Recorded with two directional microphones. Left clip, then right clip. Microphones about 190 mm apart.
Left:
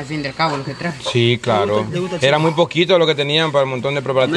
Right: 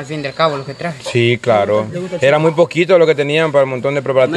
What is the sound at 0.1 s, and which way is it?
Speech, 45° right (ahead or behind).